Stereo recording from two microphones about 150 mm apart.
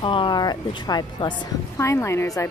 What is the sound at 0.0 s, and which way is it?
Speech, 35° left (ahead or behind).